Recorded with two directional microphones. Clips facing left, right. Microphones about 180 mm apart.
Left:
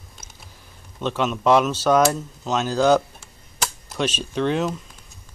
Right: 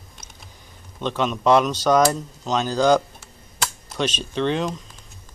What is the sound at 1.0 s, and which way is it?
Speech, 5° left (ahead or behind).